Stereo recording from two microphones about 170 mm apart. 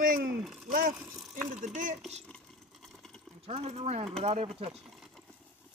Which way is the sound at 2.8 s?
Centre (ahead or behind).